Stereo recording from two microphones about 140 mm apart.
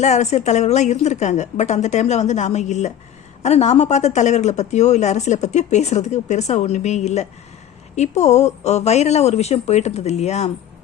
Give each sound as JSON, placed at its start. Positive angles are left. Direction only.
{"t": 0.0, "sound": "speech", "side_deg": 55}